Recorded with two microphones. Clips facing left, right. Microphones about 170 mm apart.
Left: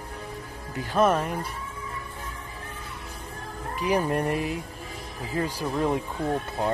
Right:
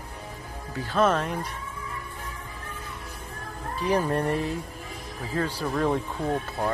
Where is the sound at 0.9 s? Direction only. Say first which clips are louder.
Left 1 dB; 10° left (ahead or behind).